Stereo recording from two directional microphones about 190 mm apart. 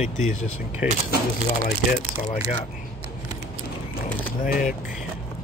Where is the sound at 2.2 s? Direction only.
40° left (ahead or behind).